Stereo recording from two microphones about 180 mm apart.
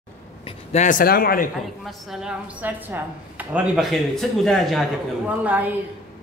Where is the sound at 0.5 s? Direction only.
40° left (ahead or behind); by 1.5 s 55° left (ahead or behind).